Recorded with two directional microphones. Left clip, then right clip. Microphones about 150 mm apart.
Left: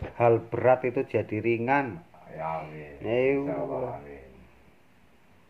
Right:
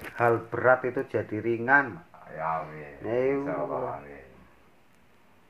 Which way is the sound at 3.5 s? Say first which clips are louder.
Right 1 dB; 15° right (ahead or behind).